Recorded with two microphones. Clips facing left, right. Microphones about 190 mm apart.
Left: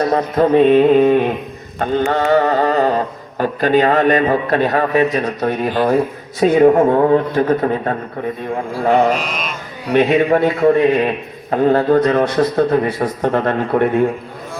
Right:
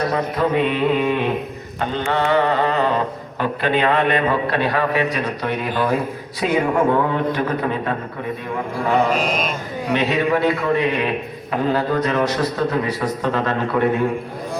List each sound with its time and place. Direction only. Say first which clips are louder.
0.1 s music: left 6 dB; 40° left (ahead or behind)
6.4 s a man's voice: left 8 dB; 40° left (ahead or behind)
8.4 s music: left 5 dB; 45° left (ahead or behind)